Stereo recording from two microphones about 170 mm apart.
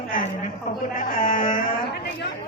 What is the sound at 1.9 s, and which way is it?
Speech, 75° left (ahead or behind).